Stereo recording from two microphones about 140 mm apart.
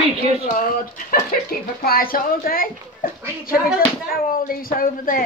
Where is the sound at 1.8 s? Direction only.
90° left.